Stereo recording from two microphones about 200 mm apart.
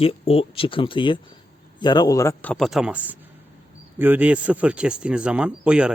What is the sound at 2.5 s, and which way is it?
Speech, centre (ahead or behind).